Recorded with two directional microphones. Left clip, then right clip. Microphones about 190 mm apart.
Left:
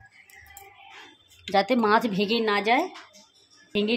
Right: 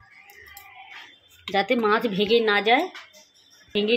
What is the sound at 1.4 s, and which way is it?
Speech, 35° left (ahead or behind).